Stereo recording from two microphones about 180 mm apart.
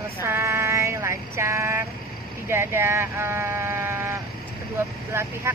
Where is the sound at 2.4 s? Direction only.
15° right (ahead or behind).